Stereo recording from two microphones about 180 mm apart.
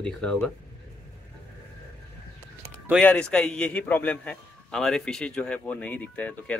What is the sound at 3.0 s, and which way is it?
A man's voice, 5° left (ahead or behind).